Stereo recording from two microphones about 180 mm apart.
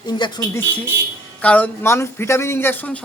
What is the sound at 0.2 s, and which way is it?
Speech, 20° left (ahead or behind).